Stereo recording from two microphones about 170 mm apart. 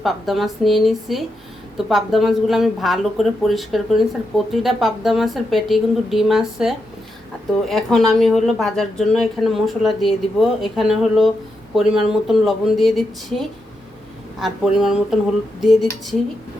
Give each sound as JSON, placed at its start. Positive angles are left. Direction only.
{"t": 0.0, "sound": "speech", "side_deg": 0}